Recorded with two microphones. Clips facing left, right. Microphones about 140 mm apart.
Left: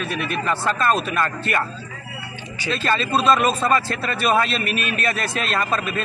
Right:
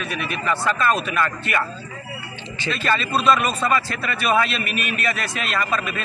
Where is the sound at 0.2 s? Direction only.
40° left (ahead or behind).